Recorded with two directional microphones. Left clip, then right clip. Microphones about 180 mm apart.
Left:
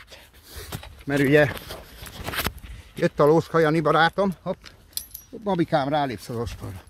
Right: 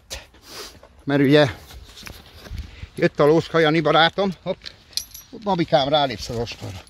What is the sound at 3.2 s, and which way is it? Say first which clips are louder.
Speech: right 1 dB; 10° left (ahead or behind).